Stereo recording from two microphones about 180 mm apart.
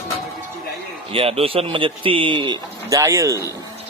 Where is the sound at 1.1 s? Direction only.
30° right (ahead or behind); by 3.5 s 15° right (ahead or behind).